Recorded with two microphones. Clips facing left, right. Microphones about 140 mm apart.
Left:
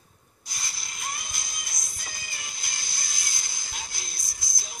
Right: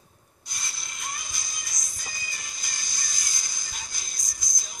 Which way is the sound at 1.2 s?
55° left (ahead or behind).